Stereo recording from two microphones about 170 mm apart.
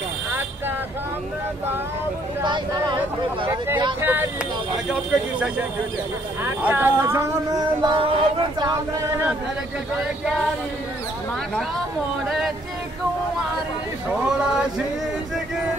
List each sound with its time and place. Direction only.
2.4 s speech: 25° right (ahead or behind)
4.0 s speech: 10° right (ahead or behind)
6.4 s speech: 10° right (ahead or behind)
12.3 s speech: centre (ahead or behind)